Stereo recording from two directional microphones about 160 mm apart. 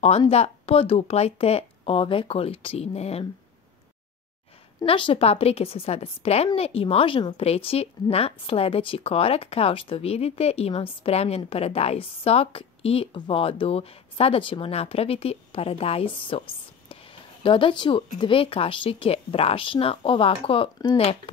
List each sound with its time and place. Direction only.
0.3 s a woman's voice: 40° left (ahead or behind)
4.8 s a woman's voice: 35° left (ahead or behind)